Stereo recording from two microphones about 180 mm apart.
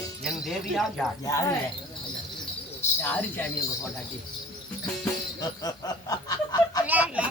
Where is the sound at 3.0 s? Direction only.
10° left (ahead or behind).